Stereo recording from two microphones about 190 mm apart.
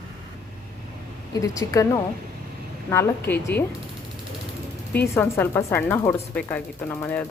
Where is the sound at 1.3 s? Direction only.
15° left (ahead or behind).